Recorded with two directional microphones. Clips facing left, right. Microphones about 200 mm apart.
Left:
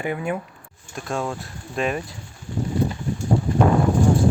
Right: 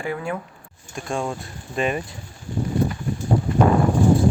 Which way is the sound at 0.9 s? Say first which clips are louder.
Even; centre (ahead or behind).